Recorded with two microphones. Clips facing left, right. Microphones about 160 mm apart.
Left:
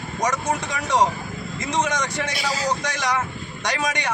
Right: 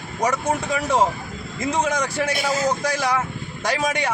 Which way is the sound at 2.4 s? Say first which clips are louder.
Right 3 dB; 50° right (ahead or behind).